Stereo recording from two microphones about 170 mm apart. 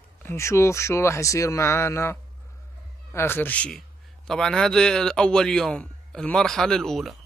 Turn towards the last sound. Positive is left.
turn(degrees=0)  # may be behind; listen again after turning